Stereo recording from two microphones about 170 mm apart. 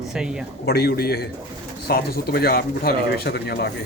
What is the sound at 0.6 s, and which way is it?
Speech, 70° left (ahead or behind).